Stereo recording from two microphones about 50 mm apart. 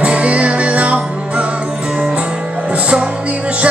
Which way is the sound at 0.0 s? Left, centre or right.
Right.